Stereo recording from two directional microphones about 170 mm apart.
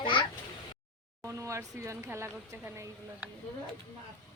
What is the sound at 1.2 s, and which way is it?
Speech, 15° right (ahead or behind).